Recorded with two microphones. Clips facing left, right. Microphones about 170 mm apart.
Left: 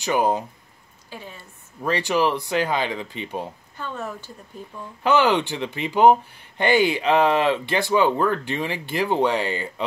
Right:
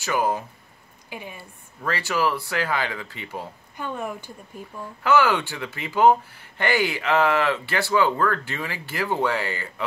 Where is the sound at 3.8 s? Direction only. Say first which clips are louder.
Right 1 dB; 15° right (ahead or behind).